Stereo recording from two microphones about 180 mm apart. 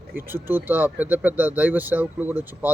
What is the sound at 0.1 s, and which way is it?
A man's voice, 10° right (ahead or behind).